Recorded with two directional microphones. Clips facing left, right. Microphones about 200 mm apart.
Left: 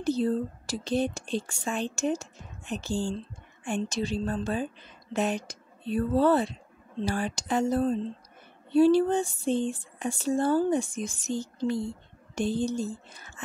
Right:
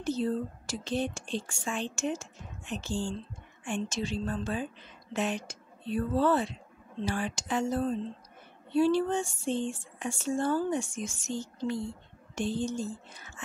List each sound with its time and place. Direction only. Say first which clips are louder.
0.0 s a woman's voice: left 4 dB; 35° left (ahead or behind)